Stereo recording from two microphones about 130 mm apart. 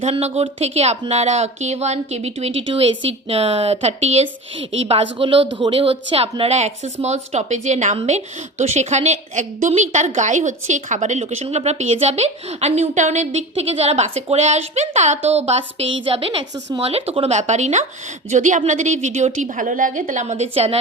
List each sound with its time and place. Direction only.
0.0 s a woman's voice: 55° right (ahead or behind); by 20.3 s 80° right
20.3 s speech: 50° right (ahead or behind)